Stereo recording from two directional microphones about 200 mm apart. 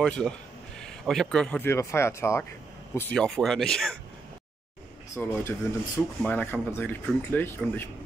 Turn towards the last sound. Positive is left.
turn(degrees=10)  # may be behind; listen again after turning